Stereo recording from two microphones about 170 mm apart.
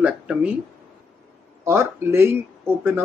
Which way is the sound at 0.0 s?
5° right (ahead or behind).